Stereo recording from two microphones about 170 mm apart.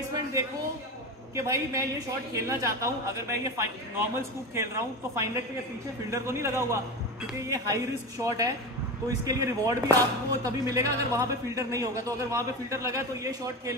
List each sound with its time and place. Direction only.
0.1 s a man's voice: 20° right (ahead or behind)